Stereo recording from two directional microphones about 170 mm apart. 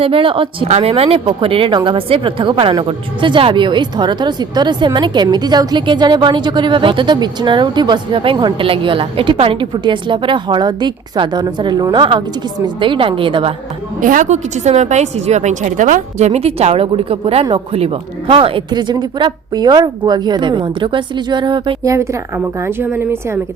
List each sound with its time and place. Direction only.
0.0 s a woman's voice: 30° right (ahead or behind)
14.0 s a woman's voice: 50° right (ahead or behind); by 21.9 s 30° right (ahead or behind)
21.9 s a woman's voice: 15° right (ahead or behind)